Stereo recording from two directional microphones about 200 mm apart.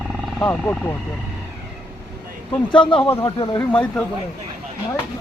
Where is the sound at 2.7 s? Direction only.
25° left (ahead or behind).